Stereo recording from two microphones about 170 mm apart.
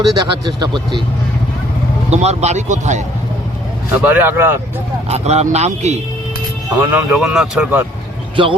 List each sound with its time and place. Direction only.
0.2 s speech: 25° right (ahead or behind)
2.0 s speech: 40° right (ahead or behind)
3.9 s speech: 10° right (ahead or behind)
5.0 s speech: 40° right (ahead or behind)
6.7 s speech: 10° right (ahead or behind)
8.4 s speech: 30° right (ahead or behind)